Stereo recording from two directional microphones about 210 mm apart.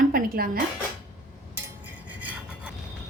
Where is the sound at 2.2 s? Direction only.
5° right (ahead or behind).